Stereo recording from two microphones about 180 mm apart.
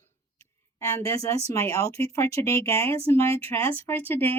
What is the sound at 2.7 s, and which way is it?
Speech, 30° right (ahead or behind).